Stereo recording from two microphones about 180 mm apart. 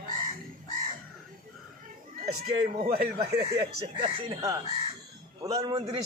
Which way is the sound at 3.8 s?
25° right (ahead or behind).